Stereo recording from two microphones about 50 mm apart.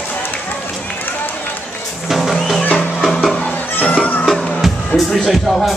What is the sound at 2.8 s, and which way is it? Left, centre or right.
Music, centre.